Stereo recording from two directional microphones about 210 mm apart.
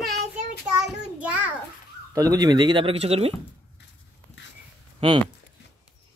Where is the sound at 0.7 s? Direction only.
5° right (ahead or behind).